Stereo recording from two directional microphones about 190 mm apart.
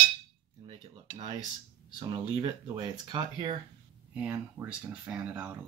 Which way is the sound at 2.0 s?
30° right (ahead or behind).